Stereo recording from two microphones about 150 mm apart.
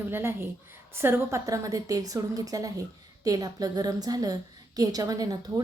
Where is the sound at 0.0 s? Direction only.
15° right (ahead or behind).